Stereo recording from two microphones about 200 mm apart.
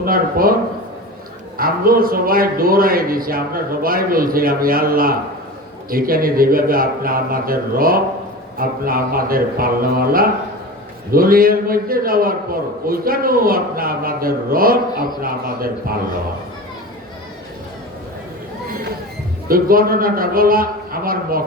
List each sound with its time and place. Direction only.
0.0 s a man's voice: 45° right (ahead or behind)
1.5 s a man's voice: 45° right (ahead or behind)
19.5 s a man's voice: 45° right (ahead or behind)